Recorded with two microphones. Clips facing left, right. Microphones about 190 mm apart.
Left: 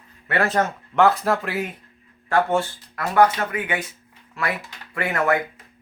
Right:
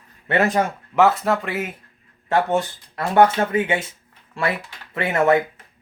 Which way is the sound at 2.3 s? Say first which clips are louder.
Right 1 dB; 20° right (ahead or behind).